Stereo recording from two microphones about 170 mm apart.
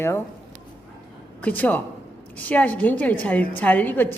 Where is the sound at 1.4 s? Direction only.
10° left (ahead or behind).